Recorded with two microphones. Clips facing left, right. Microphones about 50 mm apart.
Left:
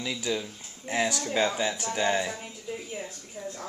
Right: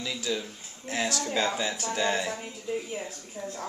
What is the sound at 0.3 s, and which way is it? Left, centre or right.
Speech, left.